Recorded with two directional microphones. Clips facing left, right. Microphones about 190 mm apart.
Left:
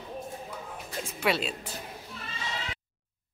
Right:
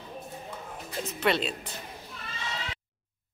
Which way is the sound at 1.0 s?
10° left (ahead or behind).